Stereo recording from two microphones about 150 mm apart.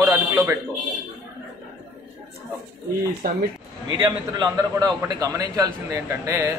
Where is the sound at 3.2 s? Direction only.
75° right (ahead or behind).